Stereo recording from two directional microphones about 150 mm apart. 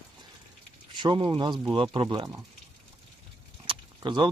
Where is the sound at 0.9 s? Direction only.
30° right (ahead or behind).